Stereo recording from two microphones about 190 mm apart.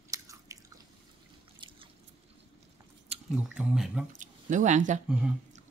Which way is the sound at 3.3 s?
5° right (ahead or behind).